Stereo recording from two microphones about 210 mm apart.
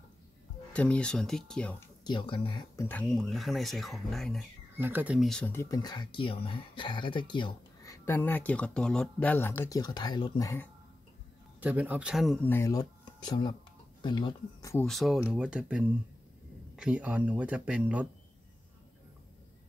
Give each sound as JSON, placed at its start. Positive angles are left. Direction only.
{"t": 0.7, "sound": "speech", "side_deg": 5}
{"t": 2.0, "sound": "speech", "side_deg": 25}
{"t": 4.7, "sound": "speech", "side_deg": -10}
{"t": 11.6, "sound": "speech", "side_deg": -5}
{"t": 12.4, "sound": "speech", "side_deg": 15}
{"t": 14.9, "sound": "speech", "side_deg": 0}